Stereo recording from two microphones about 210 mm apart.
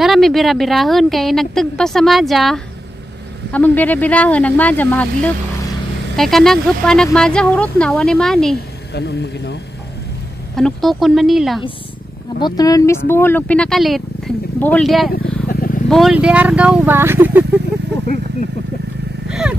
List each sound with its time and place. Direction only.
0.0 s a woman's voice: centre (ahead or behind)
8.9 s a man's voice: 55° left (ahead or behind)
10.5 s a woman's voice: centre (ahead or behind)
12.4 s speech: 20° left (ahead or behind); by 15.0 s centre (ahead or behind)
15.4 s vehicle: 45° left (ahead or behind)
15.9 s speech: centre (ahead or behind)
19.2 s vehicle: 5° right (ahead or behind)